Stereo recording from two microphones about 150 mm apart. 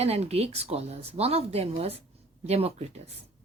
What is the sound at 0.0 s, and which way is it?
Speech, 45° right (ahead or behind).